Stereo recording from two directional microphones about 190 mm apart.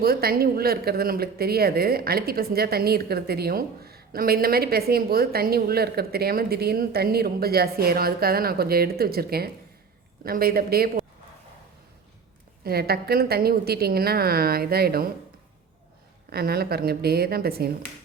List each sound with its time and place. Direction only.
0.0 s a woman's voice: 50° right (ahead or behind)
12.6 s a woman's voice: 55° right (ahead or behind)
16.3 s a woman's voice: 55° right (ahead or behind)